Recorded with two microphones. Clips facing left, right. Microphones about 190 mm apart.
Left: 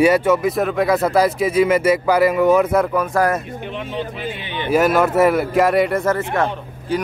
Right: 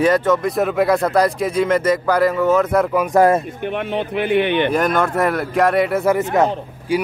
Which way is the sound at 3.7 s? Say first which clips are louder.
Right 6 dB; 60° right (ahead or behind).